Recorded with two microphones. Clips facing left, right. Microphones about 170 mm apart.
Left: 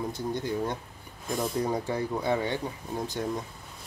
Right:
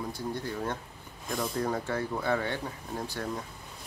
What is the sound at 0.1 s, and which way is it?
Speech, 20° left (ahead or behind).